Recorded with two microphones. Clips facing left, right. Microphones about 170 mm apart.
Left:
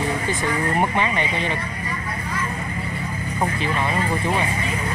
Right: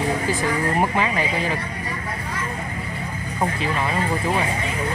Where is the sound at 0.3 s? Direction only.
5° right (ahead or behind).